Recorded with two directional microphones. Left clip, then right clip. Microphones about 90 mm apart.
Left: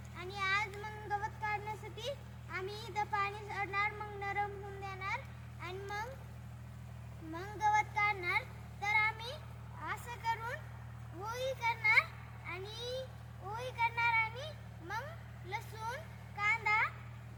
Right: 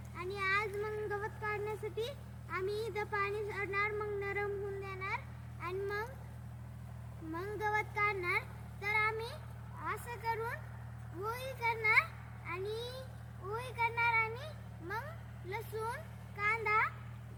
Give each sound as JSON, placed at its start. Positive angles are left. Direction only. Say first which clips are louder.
{"t": 0.2, "sound": "a sound", "louder": "right 1 dB", "side_deg": 20}
{"t": 2.0, "sound": "a child's voice", "louder": "right 2 dB", "side_deg": 20}
{"t": 7.3, "sound": "a child's voice", "louder": "left 4 dB", "side_deg": 20}